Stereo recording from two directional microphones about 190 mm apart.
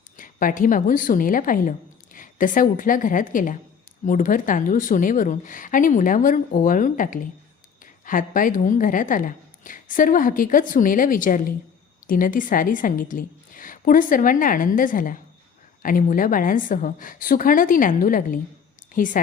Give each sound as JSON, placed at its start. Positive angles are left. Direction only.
{"t": 0.2, "sound": "a woman's voice", "side_deg": 45}